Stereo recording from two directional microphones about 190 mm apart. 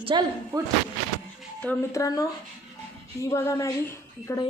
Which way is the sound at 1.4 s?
10° left (ahead or behind).